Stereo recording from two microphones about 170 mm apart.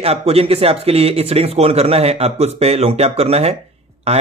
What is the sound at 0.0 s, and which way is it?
Speech, 35° right (ahead or behind).